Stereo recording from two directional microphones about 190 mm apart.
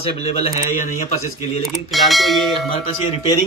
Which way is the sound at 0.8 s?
40° left (ahead or behind).